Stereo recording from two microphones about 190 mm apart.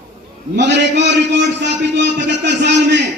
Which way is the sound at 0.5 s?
65° right (ahead or behind).